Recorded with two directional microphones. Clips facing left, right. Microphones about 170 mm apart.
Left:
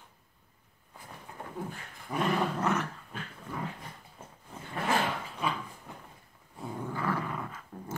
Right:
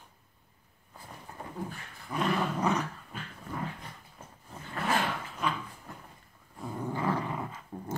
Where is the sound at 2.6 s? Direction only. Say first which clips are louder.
Right 1 dB; 15° right (ahead or behind).